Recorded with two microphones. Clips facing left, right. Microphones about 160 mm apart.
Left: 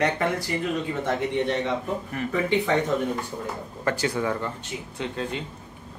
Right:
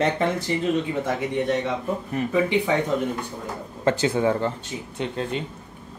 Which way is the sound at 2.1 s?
15° right (ahead or behind).